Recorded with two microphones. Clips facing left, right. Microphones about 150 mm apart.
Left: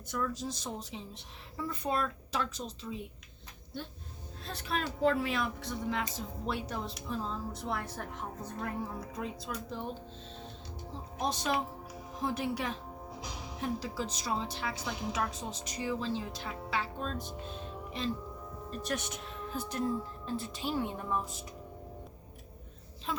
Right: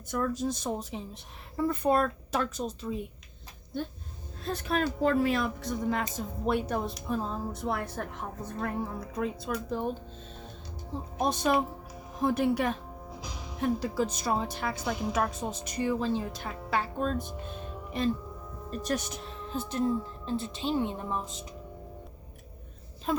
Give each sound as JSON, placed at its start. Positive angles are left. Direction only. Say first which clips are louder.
{"t": 0.1, "sound": "a woman's voice", "louder": "right 6 dB", "side_deg": -50}
{"t": 9.1, "sound": "speech", "louder": "right 10 dB", "side_deg": -55}
{"t": 11.2, "sound": "a woman's voice", "louder": "right 6 dB", "side_deg": -50}
{"t": 18.7, "sound": "a woman's voice", "louder": "right 5 dB", "side_deg": -40}
{"t": 23.1, "sound": "a woman's voice", "louder": "right 8 dB", "side_deg": -45}